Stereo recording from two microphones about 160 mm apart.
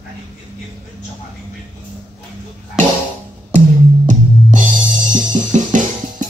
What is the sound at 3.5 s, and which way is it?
Music, 50° right (ahead or behind).